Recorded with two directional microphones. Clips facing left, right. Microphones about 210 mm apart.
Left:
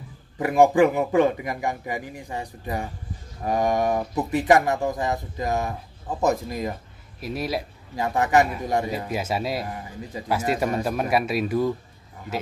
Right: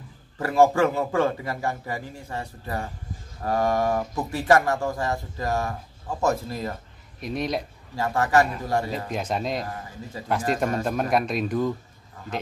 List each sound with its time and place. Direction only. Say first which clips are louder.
0.4 s speech: left 2 dB; 15° left (ahead or behind)
7.2 s speech: even; 5° left (ahead or behind)
7.9 s speech: left 1 dB; 20° left (ahead or behind)
9.1 s speech: even; 5° left (ahead or behind)